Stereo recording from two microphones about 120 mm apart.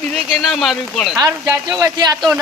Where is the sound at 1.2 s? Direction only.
25° right (ahead or behind).